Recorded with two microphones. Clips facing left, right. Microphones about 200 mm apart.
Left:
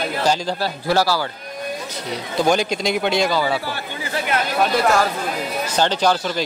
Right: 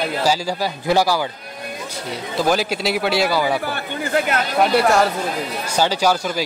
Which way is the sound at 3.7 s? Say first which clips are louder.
Right 5 dB; 50° right (ahead or behind).